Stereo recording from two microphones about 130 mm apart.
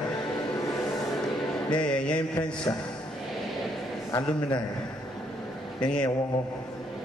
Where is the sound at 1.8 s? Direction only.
5° left (ahead or behind).